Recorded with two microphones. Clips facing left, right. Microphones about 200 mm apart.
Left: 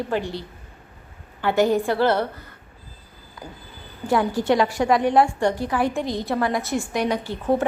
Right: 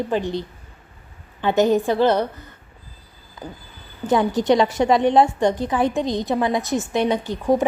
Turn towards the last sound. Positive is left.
turn(degrees=-15)  # may be behind; listen again after turning